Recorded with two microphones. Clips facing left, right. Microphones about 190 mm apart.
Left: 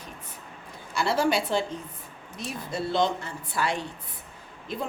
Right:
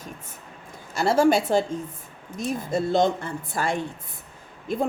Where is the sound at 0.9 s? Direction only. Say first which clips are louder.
Right 5 dB; 45° right (ahead or behind).